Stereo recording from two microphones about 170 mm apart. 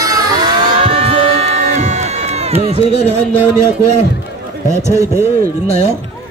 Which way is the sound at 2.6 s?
35° right (ahead or behind).